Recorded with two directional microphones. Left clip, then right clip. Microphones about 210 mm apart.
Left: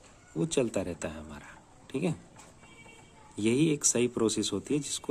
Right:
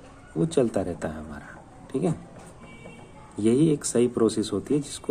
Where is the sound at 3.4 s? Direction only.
30° left (ahead or behind).